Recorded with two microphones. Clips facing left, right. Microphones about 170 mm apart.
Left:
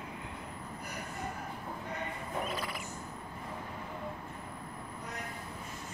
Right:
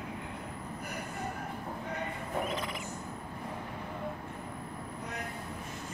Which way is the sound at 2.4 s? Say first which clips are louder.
Right 2 dB; 20° right (ahead or behind).